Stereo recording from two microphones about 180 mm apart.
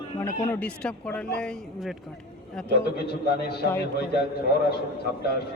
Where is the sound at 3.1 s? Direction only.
60° left (ahead or behind).